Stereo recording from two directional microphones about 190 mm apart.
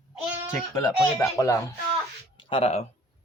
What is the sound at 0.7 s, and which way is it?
Speech, 20° left (ahead or behind).